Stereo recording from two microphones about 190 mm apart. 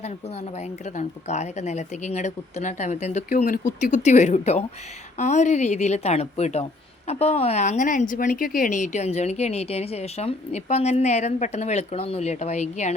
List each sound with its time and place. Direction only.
0.9 s speech: 35° left (ahead or behind)